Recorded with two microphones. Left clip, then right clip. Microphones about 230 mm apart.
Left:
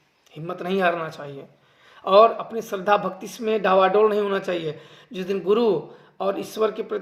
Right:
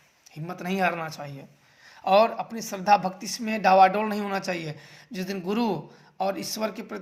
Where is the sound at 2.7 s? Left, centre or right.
Right.